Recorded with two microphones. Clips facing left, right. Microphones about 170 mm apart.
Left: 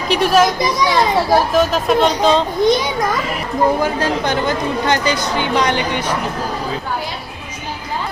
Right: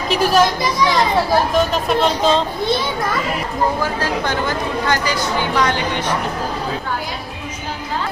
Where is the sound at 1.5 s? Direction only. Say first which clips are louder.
Left 3 dB; centre (ahead or behind).